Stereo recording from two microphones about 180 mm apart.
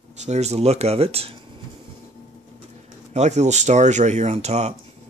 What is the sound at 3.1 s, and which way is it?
Speech, 40° right (ahead or behind).